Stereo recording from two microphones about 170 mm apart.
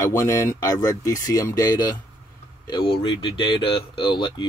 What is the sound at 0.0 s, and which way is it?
Speech, 15° left (ahead or behind).